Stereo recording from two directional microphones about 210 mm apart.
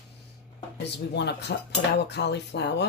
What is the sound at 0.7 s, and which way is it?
Speech, 55° left (ahead or behind).